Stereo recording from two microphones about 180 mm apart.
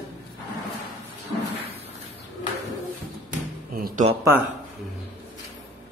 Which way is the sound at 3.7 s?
55° right (ahead or behind).